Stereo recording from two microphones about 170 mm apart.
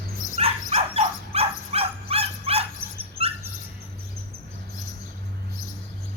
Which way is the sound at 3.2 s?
35° right (ahead or behind).